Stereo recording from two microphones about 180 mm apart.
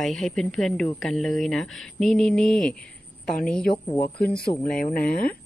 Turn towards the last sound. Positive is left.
turn(degrees=5)  # may be behind; listen again after turning